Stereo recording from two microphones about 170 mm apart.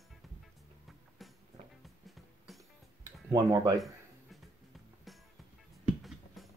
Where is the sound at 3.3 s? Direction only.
20° right (ahead or behind).